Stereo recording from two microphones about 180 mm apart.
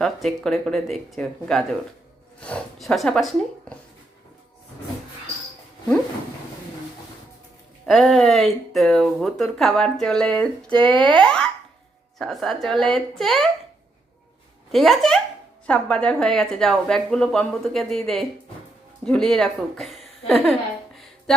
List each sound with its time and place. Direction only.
0.0 s speech: centre (ahead or behind)
7.9 s speech: centre (ahead or behind)
14.7 s speech: centre (ahead or behind)